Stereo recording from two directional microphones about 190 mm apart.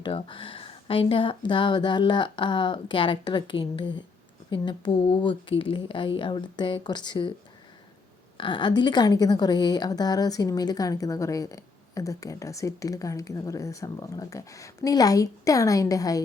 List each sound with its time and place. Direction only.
0.0 s speech: 25° left (ahead or behind)
8.4 s a woman's voice: 25° left (ahead or behind)